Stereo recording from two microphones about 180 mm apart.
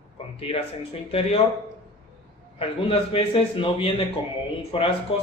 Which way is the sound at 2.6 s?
30° left (ahead or behind).